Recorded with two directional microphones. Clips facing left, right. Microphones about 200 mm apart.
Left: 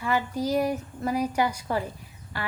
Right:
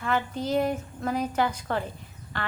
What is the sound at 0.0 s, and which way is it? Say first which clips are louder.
A woman's voice: left 1 dB; 10° left (ahead or behind).